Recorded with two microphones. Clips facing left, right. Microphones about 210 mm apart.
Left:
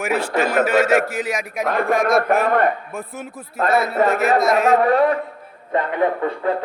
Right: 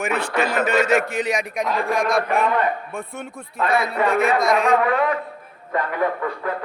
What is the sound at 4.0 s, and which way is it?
Speech, 40° left (ahead or behind).